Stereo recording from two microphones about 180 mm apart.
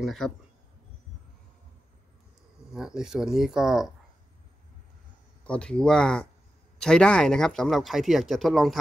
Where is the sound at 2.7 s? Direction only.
5° right (ahead or behind).